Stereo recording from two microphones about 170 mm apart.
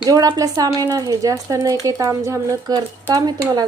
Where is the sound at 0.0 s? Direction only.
20° right (ahead or behind).